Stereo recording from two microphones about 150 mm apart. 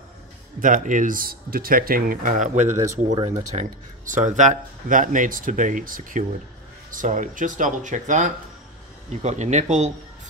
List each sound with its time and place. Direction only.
0.6 s speech: 60° right (ahead or behind)